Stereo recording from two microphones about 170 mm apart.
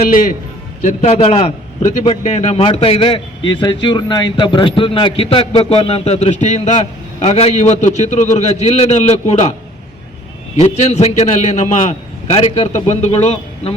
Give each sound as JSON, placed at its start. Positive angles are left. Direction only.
{"t": 0.1, "sound": "a man's voice", "side_deg": 50}
{"t": 10.6, "sound": "a man's voice", "side_deg": 40}